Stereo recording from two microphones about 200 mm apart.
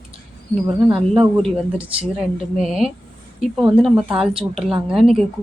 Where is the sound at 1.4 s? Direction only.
5° right (ahead or behind).